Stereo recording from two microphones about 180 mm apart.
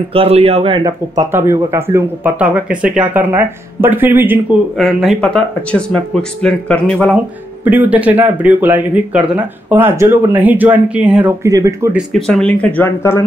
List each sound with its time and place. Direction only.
0.1 s speech: 35° right (ahead or behind)
1.3 s speech: 15° right (ahead or behind)
4.7 s speech: centre (ahead or behind)
7.6 s speech: 10° right (ahead or behind)
12.3 s speech: 5° left (ahead or behind)